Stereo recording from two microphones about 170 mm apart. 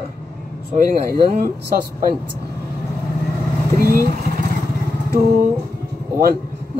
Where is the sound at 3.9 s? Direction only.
55° right (ahead or behind).